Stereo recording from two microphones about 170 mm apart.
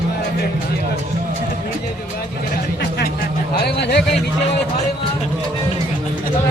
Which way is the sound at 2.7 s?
75° left (ahead or behind).